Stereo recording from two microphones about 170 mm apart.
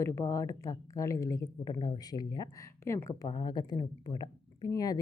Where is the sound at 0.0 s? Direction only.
15° left (ahead or behind).